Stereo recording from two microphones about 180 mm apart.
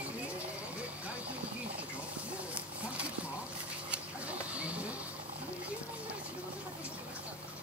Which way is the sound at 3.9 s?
5° right (ahead or behind).